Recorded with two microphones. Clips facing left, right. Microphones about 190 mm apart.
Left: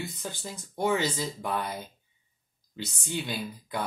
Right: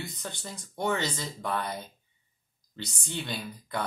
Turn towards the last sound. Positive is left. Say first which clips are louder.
# left 1 dB
turn(degrees=5)  # may be behind; listen again after turning